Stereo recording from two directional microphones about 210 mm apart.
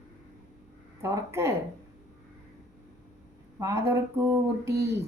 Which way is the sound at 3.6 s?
15° right (ahead or behind).